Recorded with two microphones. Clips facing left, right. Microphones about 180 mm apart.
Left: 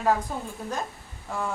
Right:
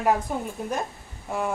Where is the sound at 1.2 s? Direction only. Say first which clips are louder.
Right 3 dB; 20° right (ahead or behind).